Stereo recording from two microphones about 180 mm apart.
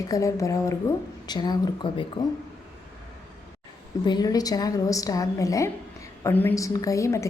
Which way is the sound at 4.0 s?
25° left (ahead or behind).